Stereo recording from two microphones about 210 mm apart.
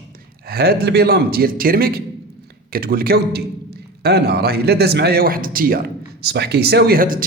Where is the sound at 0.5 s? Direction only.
50° right (ahead or behind).